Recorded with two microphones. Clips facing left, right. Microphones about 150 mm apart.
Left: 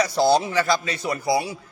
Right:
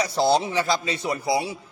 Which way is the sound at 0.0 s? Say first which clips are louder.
Left 2 dB; 25° right (ahead or behind).